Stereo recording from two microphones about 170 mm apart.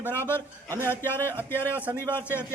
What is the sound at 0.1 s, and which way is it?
A man's voice, 15° left (ahead or behind).